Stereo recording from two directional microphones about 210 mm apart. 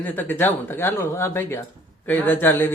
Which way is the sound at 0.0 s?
10° left (ahead or behind).